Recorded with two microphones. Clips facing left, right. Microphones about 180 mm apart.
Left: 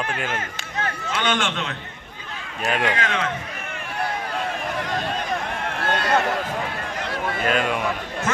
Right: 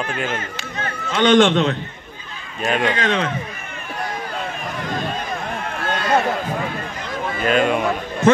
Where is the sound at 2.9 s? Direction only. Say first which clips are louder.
Right 4 dB; 30° right (ahead or behind).